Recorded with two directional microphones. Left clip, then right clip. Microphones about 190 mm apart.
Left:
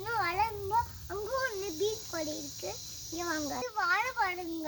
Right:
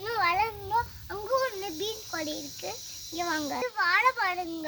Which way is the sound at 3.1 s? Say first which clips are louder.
Right 4 dB; 30° right (ahead or behind).